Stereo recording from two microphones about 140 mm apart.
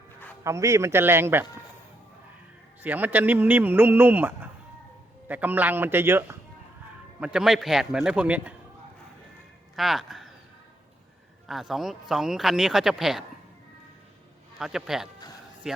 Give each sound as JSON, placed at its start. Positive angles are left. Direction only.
{"t": 0.4, "sound": "a man's voice", "side_deg": -20}
{"t": 2.8, "sound": "speech", "side_deg": -15}
{"t": 7.2, "sound": "speech", "side_deg": -5}
{"t": 9.7, "sound": "speech", "side_deg": 0}
{"t": 11.4, "sound": "speech", "side_deg": 0}
{"t": 14.6, "sound": "speech", "side_deg": -5}